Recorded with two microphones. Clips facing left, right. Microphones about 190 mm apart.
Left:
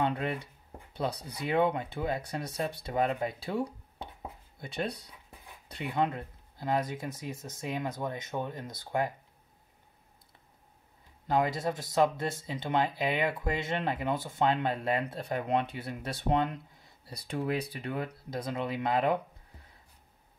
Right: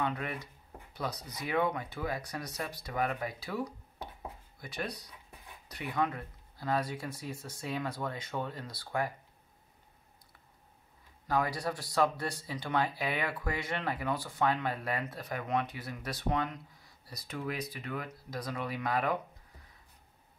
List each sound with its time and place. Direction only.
0.0 s speech: 30° left (ahead or behind)
11.2 s speech: 20° left (ahead or behind)